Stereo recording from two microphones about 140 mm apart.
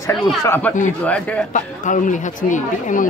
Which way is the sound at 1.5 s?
65° left (ahead or behind).